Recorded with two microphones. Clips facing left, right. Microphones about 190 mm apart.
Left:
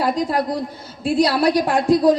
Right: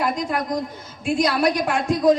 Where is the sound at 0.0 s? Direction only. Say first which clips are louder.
Left 4 dB; 35° left (ahead or behind).